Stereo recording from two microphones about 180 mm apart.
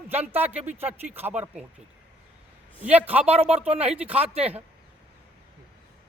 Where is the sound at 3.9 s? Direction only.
10° right (ahead or behind).